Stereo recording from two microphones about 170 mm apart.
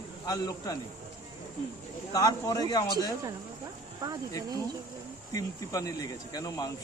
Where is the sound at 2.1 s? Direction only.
20° left (ahead or behind).